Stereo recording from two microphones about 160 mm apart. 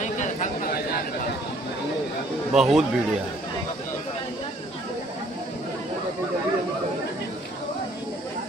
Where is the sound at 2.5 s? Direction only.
5° right (ahead or behind).